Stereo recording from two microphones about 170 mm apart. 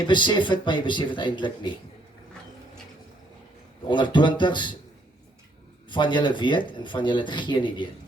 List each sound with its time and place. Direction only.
0.0 s speech: 25° left (ahead or behind)
3.8 s speech: 25° left (ahead or behind)
5.9 s speech: 25° left (ahead or behind)